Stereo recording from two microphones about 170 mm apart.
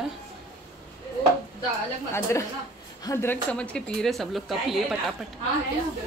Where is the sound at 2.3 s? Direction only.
15° left (ahead or behind).